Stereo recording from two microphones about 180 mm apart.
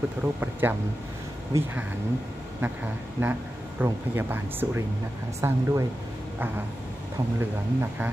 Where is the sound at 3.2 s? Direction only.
10° right (ahead or behind).